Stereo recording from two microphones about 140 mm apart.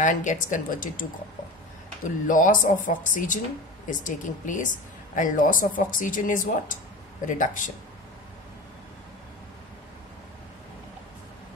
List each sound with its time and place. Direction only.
0.0 s a woman's voice: 65° left (ahead or behind)
2.2 s a woman's voice: 70° left (ahead or behind)